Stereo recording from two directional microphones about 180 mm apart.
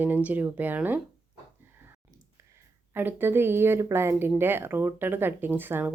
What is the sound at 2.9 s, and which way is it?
Speech, 10° right (ahead or behind).